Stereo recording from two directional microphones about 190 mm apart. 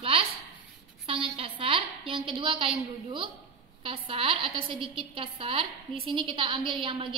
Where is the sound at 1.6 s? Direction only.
30° right (ahead or behind).